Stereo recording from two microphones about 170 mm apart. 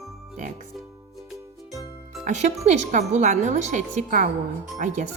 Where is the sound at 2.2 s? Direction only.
45° right (ahead or behind).